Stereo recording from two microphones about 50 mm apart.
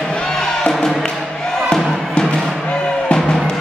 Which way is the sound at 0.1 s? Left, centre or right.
Centre.